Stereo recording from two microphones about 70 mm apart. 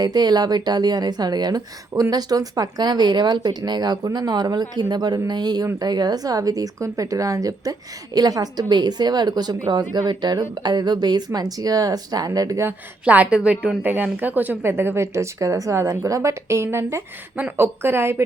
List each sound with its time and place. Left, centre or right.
0.0 s a woman's voice: right
1.9 s a woman's voice: right
8.7 s speech: right
9.9 s speech: right
11.3 s a woman's voice: right
13.1 s a woman's voice: centre; by 18.2 s right